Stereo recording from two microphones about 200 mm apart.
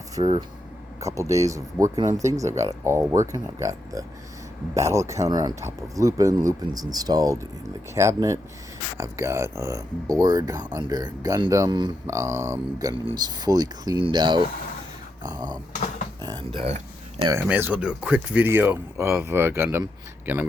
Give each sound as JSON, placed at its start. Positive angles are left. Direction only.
{"t": 0.2, "sound": "speech", "side_deg": -25}
{"t": 0.9, "sound": "speech", "side_deg": -15}
{"t": 15.2, "sound": "a sound", "side_deg": -20}
{"t": 17.2, "sound": "speech", "side_deg": -10}